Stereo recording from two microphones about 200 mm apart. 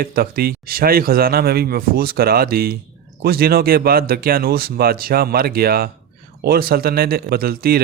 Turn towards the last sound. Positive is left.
turn(degrees=-50)  # may be behind; listen again after turning